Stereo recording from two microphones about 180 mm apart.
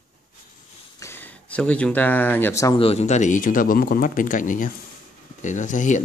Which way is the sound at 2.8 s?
35° left (ahead or behind).